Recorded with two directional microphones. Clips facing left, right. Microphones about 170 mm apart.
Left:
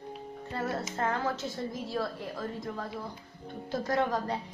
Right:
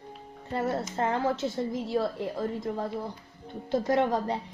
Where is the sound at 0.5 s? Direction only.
25° right (ahead or behind).